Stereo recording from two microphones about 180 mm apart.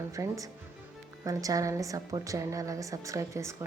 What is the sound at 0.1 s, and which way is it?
A woman's voice, 20° right (ahead or behind).